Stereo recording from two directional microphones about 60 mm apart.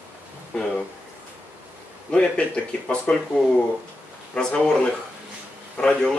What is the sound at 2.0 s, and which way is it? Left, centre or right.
A man's voice, centre.